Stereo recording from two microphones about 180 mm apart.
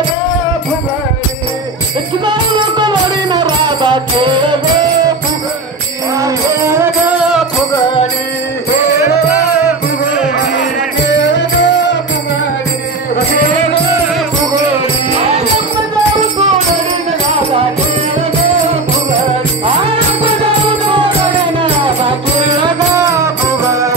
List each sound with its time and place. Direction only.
2.2 s music: 25° right (ahead or behind)
6.1 s music: 15° right (ahead or behind)
11.1 s music: 75° left (ahead or behind)